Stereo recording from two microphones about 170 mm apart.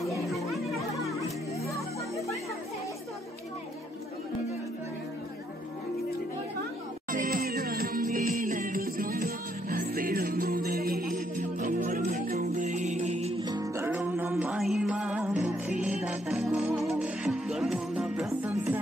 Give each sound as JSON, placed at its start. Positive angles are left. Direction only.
{"t": 0.5, "sound": "music", "side_deg": 0}
{"t": 7.1, "sound": "music", "side_deg": -55}
{"t": 12.6, "sound": "music", "side_deg": -45}
{"t": 13.4, "sound": "music", "side_deg": -25}
{"t": 14.3, "sound": "music", "side_deg": 0}